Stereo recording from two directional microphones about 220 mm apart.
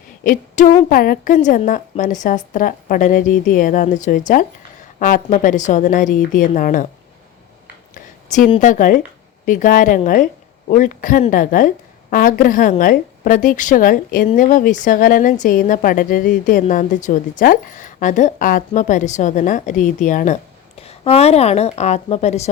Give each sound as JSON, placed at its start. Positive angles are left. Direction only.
{"t": 0.3, "sound": "a woman's voice", "side_deg": 35}
{"t": 7.9, "sound": "a woman's voice", "side_deg": 35}